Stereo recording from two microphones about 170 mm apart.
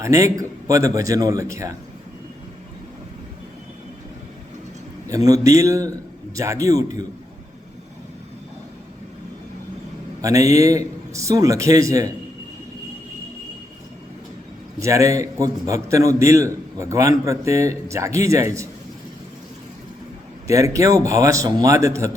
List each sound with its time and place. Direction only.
0.0 s a man's voice: 20° right (ahead or behind)
5.0 s a man's voice: 20° right (ahead or behind)
10.2 s a man's voice: 20° right (ahead or behind)
14.8 s a man's voice: 20° right (ahead or behind)
20.5 s a man's voice: 20° right (ahead or behind)